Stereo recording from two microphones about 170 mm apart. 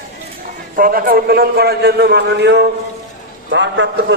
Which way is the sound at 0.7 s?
60° right (ahead or behind).